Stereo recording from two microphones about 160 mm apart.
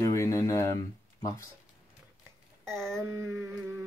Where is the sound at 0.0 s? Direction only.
20° left (ahead or behind).